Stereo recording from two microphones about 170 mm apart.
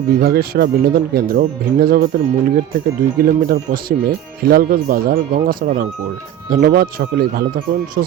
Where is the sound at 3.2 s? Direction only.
60° right (ahead or behind).